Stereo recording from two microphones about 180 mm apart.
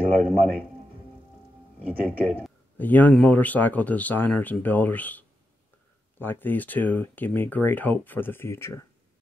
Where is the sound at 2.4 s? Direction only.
10° left (ahead or behind).